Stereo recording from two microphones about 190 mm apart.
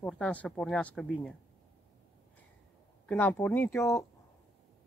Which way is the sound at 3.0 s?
10° left (ahead or behind).